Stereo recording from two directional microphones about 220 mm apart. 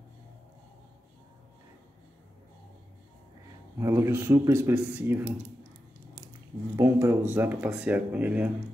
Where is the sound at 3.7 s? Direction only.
10° right (ahead or behind).